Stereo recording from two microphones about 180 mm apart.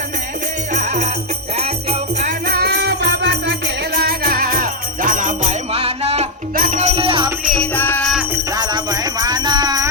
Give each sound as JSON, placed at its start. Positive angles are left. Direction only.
{"t": 0.7, "sound": "music", "side_deg": -40}
{"t": 1.5, "sound": "jingle bell", "side_deg": -35}
{"t": 2.5, "sound": "music", "side_deg": -65}
{"t": 3.9, "sound": "music", "side_deg": -55}
{"t": 7.5, "sound": "music", "side_deg": 5}
{"t": 8.5, "sound": "music", "side_deg": -20}